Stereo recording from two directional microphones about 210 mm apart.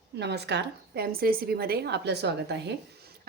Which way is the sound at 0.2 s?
55° right (ahead or behind).